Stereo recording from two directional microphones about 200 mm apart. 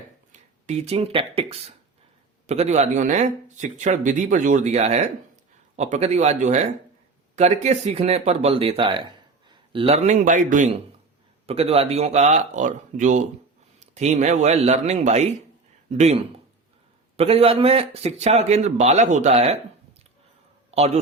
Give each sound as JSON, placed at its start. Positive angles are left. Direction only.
{"t": 0.7, "sound": "speech", "side_deg": -30}
{"t": 20.7, "sound": "a man's voice", "side_deg": -30}